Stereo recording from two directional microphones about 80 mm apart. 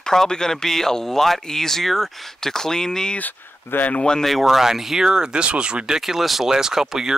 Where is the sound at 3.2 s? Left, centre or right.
Left.